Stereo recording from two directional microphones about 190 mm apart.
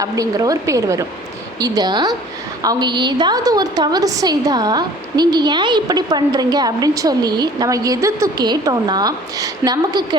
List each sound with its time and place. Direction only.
0.0 s a woman's voice: 20° right (ahead or behind)